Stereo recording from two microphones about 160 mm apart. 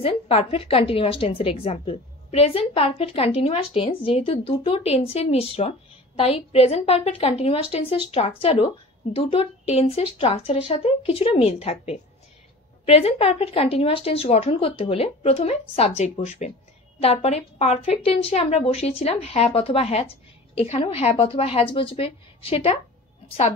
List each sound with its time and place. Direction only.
0.0 s a woman's voice: 35° left (ahead or behind)